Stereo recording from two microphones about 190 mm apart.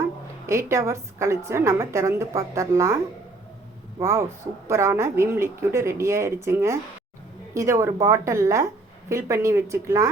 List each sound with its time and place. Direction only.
0.4 s a woman's voice: 15° right (ahead or behind)
4.0 s a woman's voice: 15° right (ahead or behind)